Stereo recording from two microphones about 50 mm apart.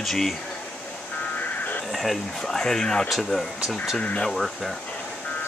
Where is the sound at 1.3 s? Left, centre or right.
Left.